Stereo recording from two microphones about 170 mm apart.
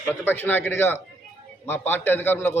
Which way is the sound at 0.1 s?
10° left (ahead or behind).